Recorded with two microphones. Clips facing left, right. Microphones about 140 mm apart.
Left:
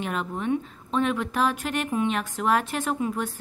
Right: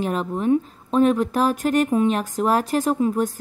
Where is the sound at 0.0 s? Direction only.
35° right (ahead or behind).